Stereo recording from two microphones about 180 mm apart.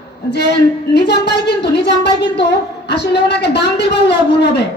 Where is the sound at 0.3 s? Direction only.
70° left (ahead or behind).